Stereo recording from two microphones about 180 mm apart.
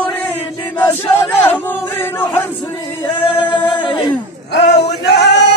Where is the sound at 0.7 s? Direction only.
10° left (ahead or behind).